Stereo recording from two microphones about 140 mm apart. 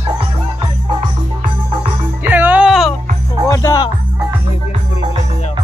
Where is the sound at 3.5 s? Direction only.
30° left (ahead or behind).